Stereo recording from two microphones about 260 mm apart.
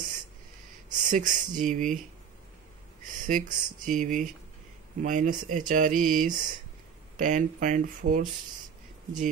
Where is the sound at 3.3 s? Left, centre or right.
Right.